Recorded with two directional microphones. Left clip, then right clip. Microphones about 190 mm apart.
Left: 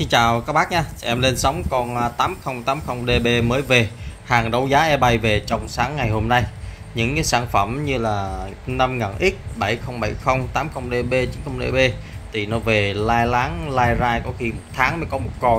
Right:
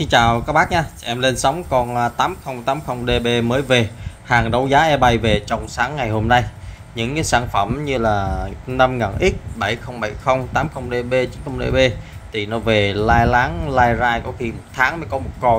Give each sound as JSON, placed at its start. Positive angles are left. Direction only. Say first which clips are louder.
{"t": 0.0, "sound": "speech", "louder": "right 2 dB", "side_deg": -15}